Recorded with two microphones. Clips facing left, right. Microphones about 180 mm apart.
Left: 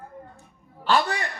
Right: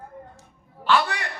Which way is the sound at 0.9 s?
40° left (ahead or behind).